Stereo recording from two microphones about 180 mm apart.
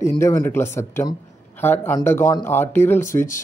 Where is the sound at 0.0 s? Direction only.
20° left (ahead or behind).